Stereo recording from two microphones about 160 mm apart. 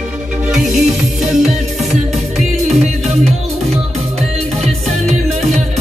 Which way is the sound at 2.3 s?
45° right (ahead or behind).